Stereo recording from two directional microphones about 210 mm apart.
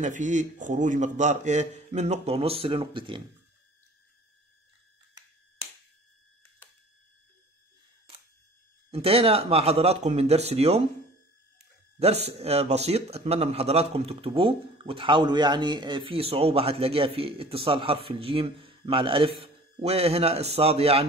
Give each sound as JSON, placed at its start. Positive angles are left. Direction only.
{"t": 0.0, "sound": "a man's voice", "side_deg": -35}
{"t": 8.9, "sound": "speech", "side_deg": -30}